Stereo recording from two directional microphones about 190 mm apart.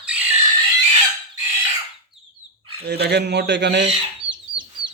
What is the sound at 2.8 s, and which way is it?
Speech, 60° right (ahead or behind).